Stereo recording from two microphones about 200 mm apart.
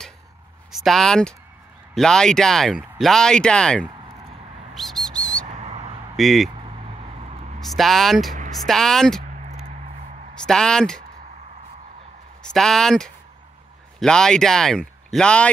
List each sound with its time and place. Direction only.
0.7 s speech: centre (ahead or behind)
4.7 s bird: centre (ahead or behind)
5.5 s a sound: 35° right (ahead or behind)
6.1 s speech: centre (ahead or behind)
6.9 s vehicle: 30° right (ahead or behind)
7.6 s speech: centre (ahead or behind)
9.2 s a sound: 35° right (ahead or behind)
10.4 s speech: 5° left (ahead or behind)
12.5 s speech: centre (ahead or behind)